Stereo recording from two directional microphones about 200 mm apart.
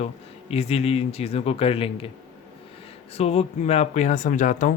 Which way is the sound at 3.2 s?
30° left (ahead or behind).